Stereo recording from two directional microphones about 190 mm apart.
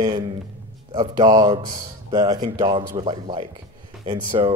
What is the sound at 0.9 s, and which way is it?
Speech, 20° right (ahead or behind).